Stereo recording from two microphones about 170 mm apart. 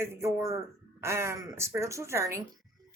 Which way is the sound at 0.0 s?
15° right (ahead or behind).